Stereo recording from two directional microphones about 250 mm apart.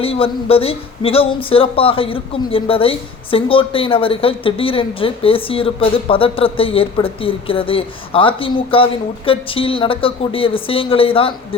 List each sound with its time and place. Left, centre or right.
0.0 s speech: left